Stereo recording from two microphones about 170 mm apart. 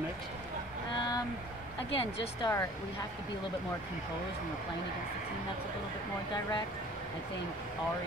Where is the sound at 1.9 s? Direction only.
30° left (ahead or behind).